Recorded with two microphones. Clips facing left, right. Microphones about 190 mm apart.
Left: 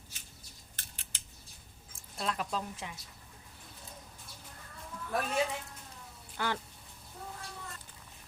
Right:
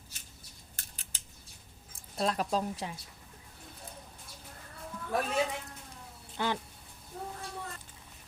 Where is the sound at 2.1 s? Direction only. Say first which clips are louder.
Right 5 dB; 35° right (ahead or behind).